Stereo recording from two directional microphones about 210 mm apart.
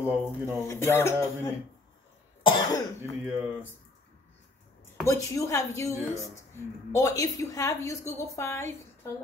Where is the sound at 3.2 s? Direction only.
10° right (ahead or behind).